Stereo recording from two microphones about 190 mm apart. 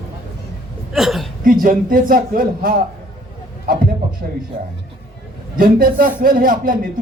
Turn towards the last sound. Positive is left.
turn(degrees=-45)  # may be behind; listen again after turning